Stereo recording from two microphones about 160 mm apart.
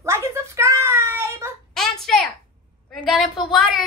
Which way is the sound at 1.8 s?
5° left (ahead or behind).